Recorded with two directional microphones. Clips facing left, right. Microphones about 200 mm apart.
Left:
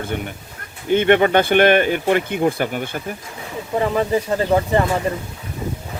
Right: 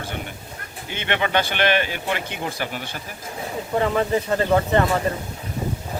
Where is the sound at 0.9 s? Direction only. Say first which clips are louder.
Left 11 dB; 50° left (ahead or behind).